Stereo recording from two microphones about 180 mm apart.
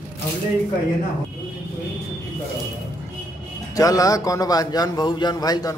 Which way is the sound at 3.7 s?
20° left (ahead or behind).